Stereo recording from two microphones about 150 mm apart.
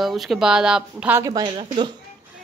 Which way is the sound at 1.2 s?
25° right (ahead or behind).